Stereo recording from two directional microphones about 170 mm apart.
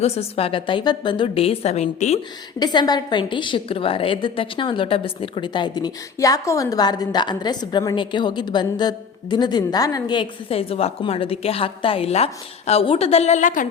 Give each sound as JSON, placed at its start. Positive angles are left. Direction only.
{"t": 0.0, "sound": "a woman's voice", "side_deg": 35}
{"t": 2.6, "sound": "a woman's voice", "side_deg": 25}